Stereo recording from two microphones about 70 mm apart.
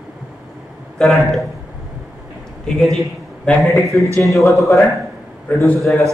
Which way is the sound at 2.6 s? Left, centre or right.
Centre.